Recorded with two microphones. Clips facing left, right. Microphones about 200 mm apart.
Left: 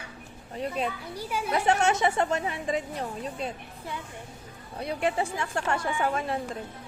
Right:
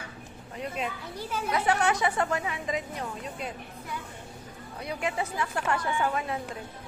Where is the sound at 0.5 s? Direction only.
35° left (ahead or behind).